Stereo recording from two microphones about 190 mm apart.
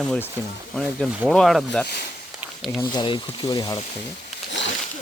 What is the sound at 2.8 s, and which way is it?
Speech, 25° left (ahead or behind).